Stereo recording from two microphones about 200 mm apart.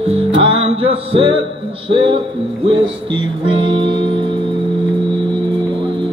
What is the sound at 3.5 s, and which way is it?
Music, 25° right (ahead or behind).